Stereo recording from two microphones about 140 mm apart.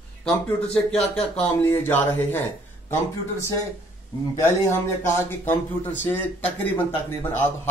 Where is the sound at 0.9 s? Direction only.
45° left (ahead or behind).